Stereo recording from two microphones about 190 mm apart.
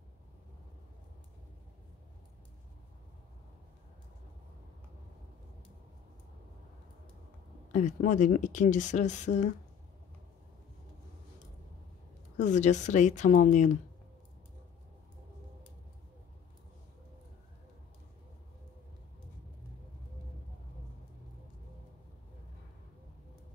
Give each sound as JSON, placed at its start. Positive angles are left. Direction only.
{"t": 7.7, "sound": "speech", "side_deg": 40}
{"t": 12.4, "sound": "speech", "side_deg": 40}